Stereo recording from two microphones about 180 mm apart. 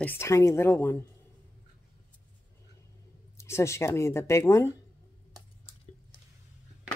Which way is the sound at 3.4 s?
15° left (ahead or behind).